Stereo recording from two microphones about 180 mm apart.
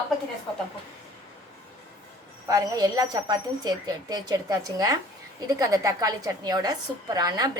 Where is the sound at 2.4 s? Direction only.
20° right (ahead or behind).